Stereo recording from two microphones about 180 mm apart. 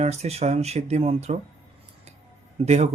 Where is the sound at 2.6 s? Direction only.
35° right (ahead or behind).